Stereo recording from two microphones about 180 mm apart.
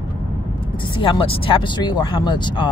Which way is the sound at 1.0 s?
30° left (ahead or behind).